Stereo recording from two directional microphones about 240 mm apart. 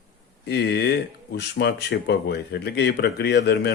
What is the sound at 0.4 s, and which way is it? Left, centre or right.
A man's voice, left.